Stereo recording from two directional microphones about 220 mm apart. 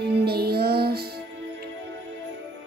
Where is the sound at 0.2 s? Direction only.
45° right (ahead or behind).